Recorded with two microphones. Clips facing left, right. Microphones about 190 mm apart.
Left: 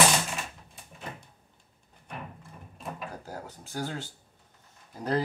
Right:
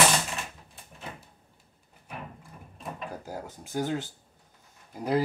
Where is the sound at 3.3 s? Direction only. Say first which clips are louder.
Right 2 dB; 15° right (ahead or behind).